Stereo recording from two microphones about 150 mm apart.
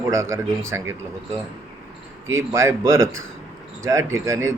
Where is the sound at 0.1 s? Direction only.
20° right (ahead or behind).